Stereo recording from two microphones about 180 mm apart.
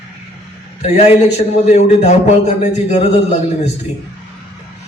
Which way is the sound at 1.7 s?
40° left (ahead or behind).